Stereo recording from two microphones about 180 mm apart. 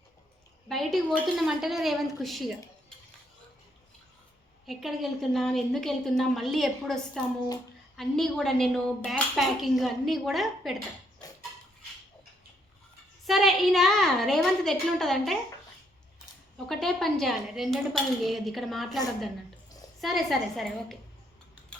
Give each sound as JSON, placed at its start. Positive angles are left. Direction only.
{"t": 0.7, "sound": "a woman's voice", "side_deg": 0}
{"t": 4.6, "sound": "a woman's voice", "side_deg": 0}
{"t": 11.2, "sound": "a sound", "side_deg": 20}
{"t": 13.2, "sound": "a woman's voice", "side_deg": 0}
{"t": 16.6, "sound": "a woman's voice", "side_deg": 0}
{"t": 20.0, "sound": "a woman's voice", "side_deg": 0}